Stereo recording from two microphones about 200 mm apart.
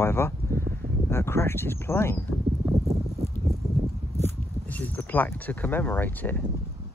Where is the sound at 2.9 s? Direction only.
35° right (ahead or behind).